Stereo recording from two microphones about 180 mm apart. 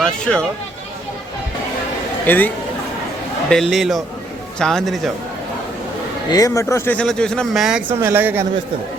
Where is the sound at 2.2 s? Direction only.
10° left (ahead or behind).